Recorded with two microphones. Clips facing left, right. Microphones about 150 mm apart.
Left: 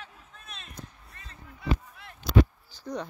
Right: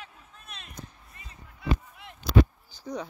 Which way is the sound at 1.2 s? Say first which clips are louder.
Even; 10° right (ahead or behind).